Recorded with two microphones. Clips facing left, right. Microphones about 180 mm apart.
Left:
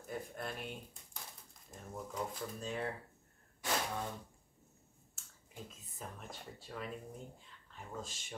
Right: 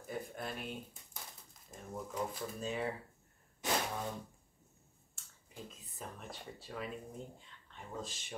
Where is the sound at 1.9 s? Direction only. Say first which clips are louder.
Right 2 dB; 5° right (ahead or behind).